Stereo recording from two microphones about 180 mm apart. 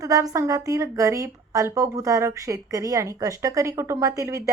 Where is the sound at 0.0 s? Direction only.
20° right (ahead or behind).